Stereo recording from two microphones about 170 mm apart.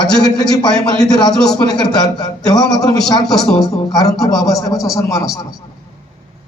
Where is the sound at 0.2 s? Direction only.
25° left (ahead or behind).